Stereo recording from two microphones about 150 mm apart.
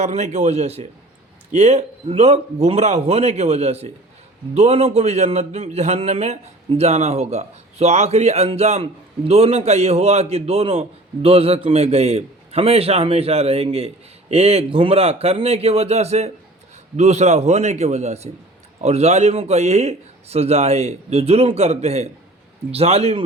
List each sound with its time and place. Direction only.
0.0 s a man's voice: 50° right (ahead or behind)